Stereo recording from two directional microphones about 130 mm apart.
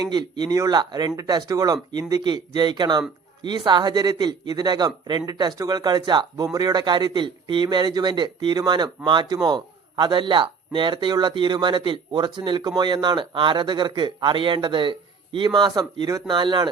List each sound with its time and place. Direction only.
0.0 s a man's voice: 30° right (ahead or behind)